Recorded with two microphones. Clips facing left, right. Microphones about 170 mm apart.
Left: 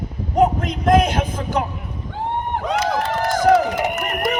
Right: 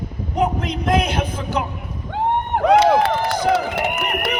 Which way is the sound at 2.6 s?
65° right (ahead or behind).